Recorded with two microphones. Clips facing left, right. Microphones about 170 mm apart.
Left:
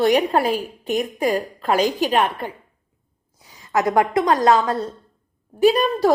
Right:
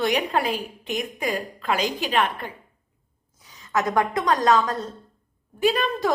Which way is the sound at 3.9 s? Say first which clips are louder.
Left 5 dB; 30° left (ahead or behind).